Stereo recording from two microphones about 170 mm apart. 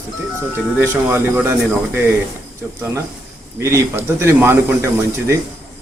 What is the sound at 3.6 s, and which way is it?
Speech, 15° right (ahead or behind).